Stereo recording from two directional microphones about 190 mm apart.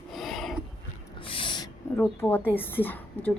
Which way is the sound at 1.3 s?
25° left (ahead or behind).